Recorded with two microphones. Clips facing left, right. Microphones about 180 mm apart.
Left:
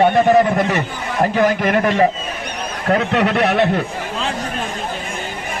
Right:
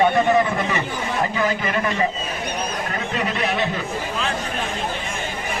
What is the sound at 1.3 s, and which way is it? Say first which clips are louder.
Speech: left 7 dB; 65° left (ahead or behind).